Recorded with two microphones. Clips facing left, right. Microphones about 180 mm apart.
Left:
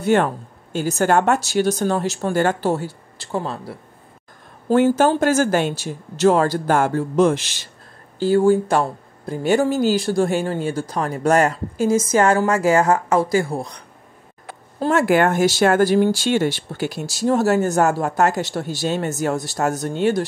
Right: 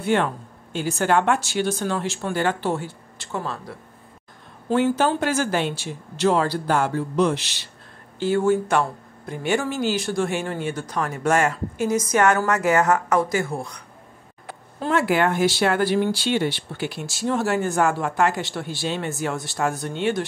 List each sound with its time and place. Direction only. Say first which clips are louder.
0.0 s speech: left 4 dB; 45° left (ahead or behind)
4.6 s speech: left 5 dB; 45° left (ahead or behind)
8.2 s speech: left 4 dB; 35° left (ahead or behind)
14.8 s speech: left 4 dB; 45° left (ahead or behind)